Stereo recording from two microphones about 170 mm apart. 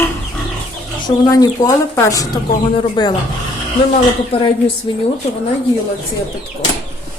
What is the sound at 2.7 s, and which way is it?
Speech, 30° left (ahead or behind).